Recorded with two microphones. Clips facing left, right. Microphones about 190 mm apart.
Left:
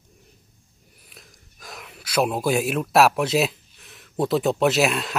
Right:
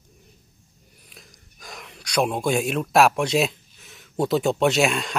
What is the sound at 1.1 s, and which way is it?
Speech, centre (ahead or behind).